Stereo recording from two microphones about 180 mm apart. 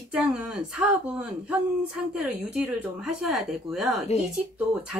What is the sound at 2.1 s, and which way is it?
Speech, 5° right (ahead or behind).